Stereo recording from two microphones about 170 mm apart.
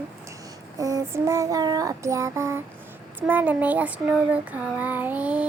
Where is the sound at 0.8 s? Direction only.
20° right (ahead or behind).